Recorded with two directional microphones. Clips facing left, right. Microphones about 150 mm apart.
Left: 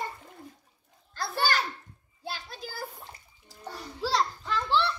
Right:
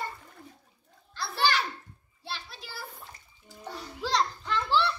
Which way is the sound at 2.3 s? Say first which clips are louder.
Even; 45° left (ahead or behind).